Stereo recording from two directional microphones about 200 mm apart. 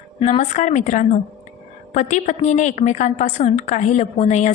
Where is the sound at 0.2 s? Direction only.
35° left (ahead or behind).